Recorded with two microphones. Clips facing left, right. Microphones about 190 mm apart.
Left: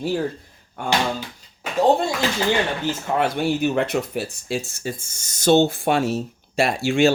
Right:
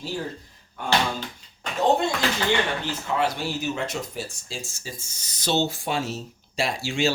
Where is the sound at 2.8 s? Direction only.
55° left (ahead or behind).